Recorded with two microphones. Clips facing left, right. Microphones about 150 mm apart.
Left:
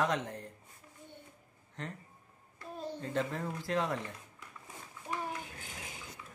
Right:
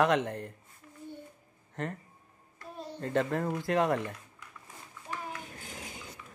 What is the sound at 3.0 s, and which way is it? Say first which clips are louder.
Speech: right 7 dB; 60° right (ahead or behind).